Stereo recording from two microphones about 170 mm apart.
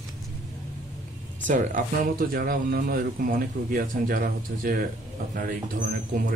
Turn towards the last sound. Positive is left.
turn(degrees=-55)  # may be behind; listen again after turning